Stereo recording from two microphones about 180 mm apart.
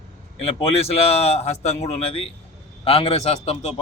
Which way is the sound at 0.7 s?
35° left (ahead or behind).